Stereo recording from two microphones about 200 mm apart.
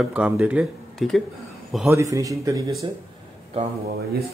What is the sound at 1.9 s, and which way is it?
Speech, 15° right (ahead or behind).